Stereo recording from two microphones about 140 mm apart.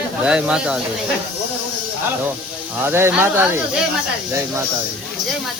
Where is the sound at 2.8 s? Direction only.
15° right (ahead or behind).